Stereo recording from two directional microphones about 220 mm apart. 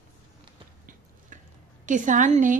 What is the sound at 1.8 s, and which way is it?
Speech, 35° right (ahead or behind).